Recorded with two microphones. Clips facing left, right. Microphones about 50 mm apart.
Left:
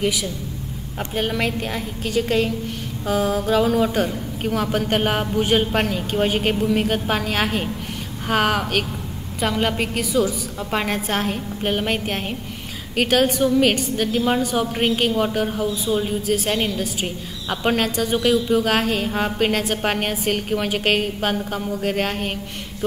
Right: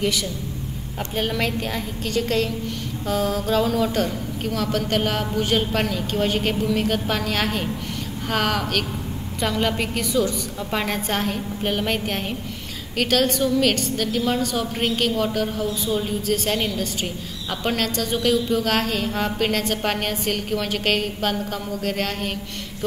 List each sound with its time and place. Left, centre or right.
1.1 s a woman's voice: centre